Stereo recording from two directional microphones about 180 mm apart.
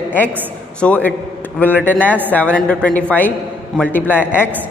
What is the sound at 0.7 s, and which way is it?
A man's voice, 5° left (ahead or behind).